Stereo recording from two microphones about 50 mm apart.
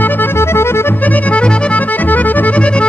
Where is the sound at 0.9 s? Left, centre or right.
Left.